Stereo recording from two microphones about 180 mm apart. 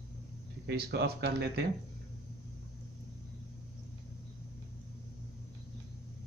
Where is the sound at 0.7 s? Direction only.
65° right (ahead or behind).